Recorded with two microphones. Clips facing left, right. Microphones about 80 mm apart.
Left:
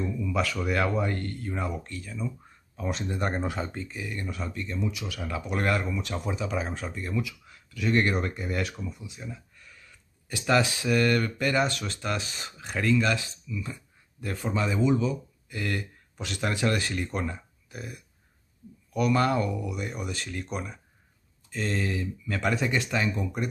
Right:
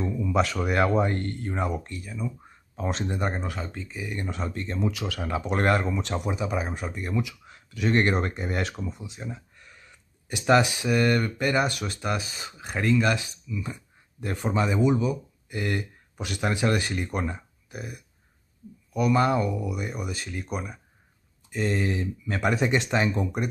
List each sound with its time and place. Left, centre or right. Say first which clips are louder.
0.0 s speech: right 3 dB; right
2.0 s speech: even; centre
2.7 s speech: right 2 dB; right
3.3 s speech: left 2 dB; centre
4.2 s speech: right 4 dB; right
4.5 s speech: right 4 dB; right
5.2 s speech: right 4 dB; right
6.2 s speech: right 2 dB; centre